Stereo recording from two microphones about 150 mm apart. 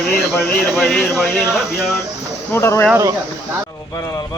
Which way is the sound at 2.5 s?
15° left (ahead or behind).